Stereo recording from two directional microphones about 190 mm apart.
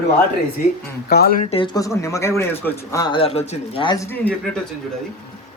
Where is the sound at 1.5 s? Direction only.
25° left (ahead or behind).